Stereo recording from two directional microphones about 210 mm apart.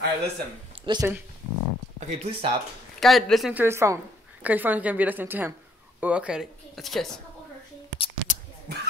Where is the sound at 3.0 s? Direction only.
Centre (ahead or behind).